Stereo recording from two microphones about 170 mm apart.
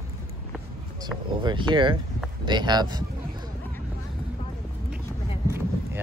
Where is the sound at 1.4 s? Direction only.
25° right (ahead or behind).